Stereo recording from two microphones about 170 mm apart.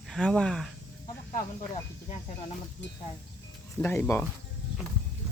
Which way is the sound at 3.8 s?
15° left (ahead or behind).